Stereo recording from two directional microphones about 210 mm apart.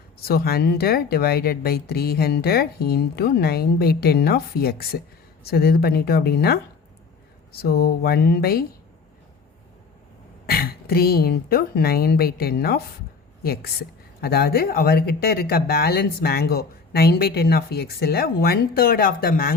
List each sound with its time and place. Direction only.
0.2 s speech: 45° left (ahead or behind)
10.4 s a woman's voice: 45° left (ahead or behind)